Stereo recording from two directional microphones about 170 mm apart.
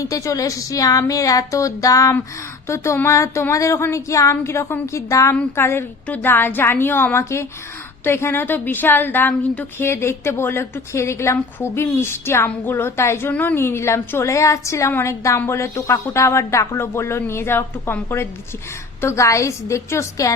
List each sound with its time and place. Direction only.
0.0 s a woman's voice: 20° left (ahead or behind)